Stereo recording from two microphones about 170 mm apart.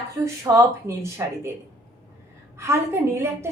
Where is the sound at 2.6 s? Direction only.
15° right (ahead or behind).